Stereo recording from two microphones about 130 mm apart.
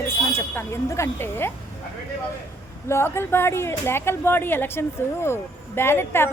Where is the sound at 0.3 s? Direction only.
20° left (ahead or behind).